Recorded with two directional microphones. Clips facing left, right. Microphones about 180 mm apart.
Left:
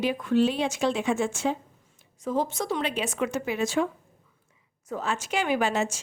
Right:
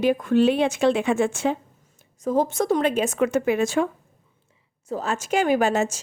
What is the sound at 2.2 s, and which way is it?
A woman's voice, 45° right (ahead or behind).